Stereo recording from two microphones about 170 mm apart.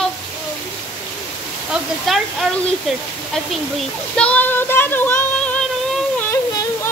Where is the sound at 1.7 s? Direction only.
Centre (ahead or behind).